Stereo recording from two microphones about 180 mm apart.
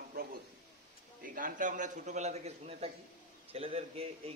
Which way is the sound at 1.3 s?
50° right (ahead or behind).